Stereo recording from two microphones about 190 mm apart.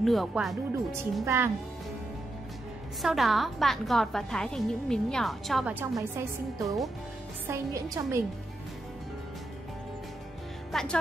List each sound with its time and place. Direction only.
0.0 s a woman's voice: centre (ahead or behind)
1.2 s a woman's voice: 15° right (ahead or behind)
3.0 s a woman's voice: centre (ahead or behind)
5.9 s a woman's voice: 15° right (ahead or behind)
10.7 s music: centre (ahead or behind)